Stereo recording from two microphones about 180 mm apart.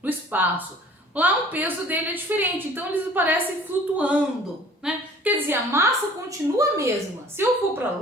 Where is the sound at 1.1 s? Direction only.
10° right (ahead or behind).